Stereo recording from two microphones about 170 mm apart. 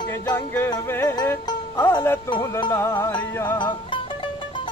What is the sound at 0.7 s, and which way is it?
Music, 15° left (ahead or behind).